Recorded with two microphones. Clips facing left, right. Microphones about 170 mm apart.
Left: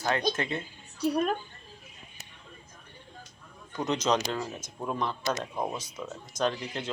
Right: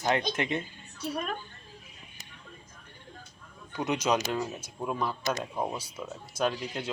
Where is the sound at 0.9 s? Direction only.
35° left (ahead or behind).